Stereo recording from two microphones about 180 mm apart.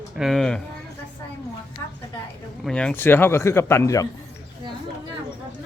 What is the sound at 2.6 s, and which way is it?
Speech, 5° left (ahead or behind).